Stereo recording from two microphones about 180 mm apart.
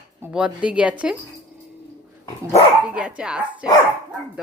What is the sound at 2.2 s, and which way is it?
Dog, 35° left (ahead or behind).